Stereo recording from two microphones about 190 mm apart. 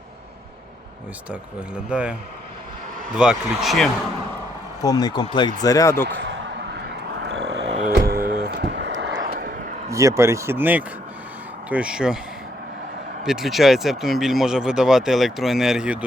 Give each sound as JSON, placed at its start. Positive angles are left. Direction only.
{"t": 1.3, "sound": "speech", "side_deg": -5}
{"t": 3.2, "sound": "speech", "side_deg": 0}
{"t": 4.8, "sound": "speech", "side_deg": 20}
{"t": 6.1, "sound": "a sound", "side_deg": -70}
{"t": 7.9, "sound": "music", "side_deg": -50}
{"t": 9.2, "sound": "vehicle", "side_deg": -50}
{"t": 9.9, "sound": "speech", "side_deg": -15}
{"t": 13.2, "sound": "speech", "side_deg": 0}